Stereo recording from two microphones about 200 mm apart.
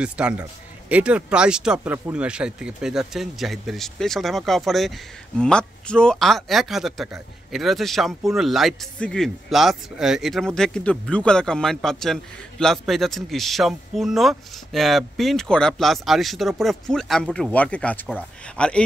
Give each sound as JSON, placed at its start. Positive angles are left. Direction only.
{"t": 0.0, "sound": "speech", "side_deg": -5}